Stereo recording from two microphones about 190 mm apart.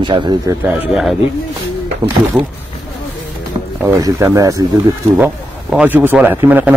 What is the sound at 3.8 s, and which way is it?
A man's voice, 15° right (ahead or behind).